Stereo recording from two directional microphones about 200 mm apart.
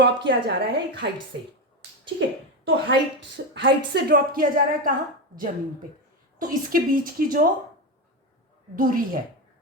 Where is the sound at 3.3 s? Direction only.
65° right (ahead or behind); by 4.9 s 45° right (ahead or behind).